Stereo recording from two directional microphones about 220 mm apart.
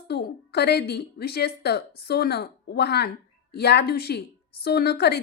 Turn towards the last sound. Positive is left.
turn(degrees=45)  # may be behind; listen again after turning